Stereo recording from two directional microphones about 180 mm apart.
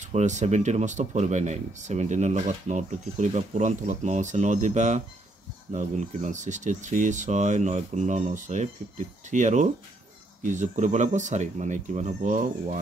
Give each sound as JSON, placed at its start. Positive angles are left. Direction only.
{"t": 0.0, "sound": "speech", "side_deg": -40}